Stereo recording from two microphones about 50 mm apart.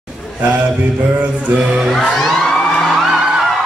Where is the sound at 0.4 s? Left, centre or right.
Right.